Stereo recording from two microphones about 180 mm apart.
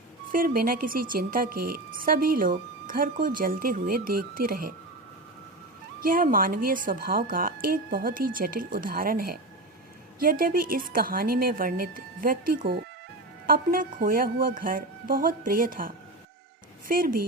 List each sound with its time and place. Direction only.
0.3 s a woman's voice: 50° right (ahead or behind)
6.0 s a woman's voice: 50° right (ahead or behind)
16.9 s a woman's voice: 50° right (ahead or behind)